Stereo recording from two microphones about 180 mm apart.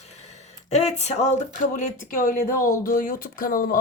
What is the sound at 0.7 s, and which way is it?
Speech, 40° left (ahead or behind).